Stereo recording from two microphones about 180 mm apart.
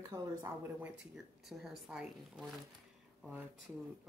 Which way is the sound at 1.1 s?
Centre (ahead or behind).